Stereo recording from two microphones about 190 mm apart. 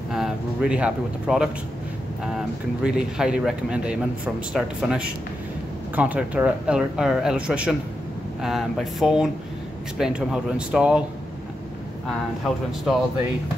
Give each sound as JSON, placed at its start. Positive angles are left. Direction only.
{"t": 0.1, "sound": "speech", "side_deg": -5}
{"t": 2.8, "sound": "a man's voice", "side_deg": -5}